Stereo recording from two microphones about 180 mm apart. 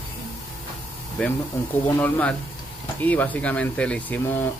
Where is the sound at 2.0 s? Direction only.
10° left (ahead or behind).